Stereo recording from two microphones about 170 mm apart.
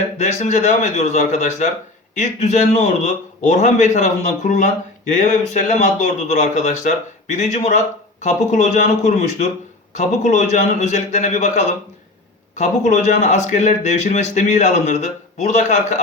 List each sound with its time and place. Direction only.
0.2 s speech: 40° left (ahead or behind)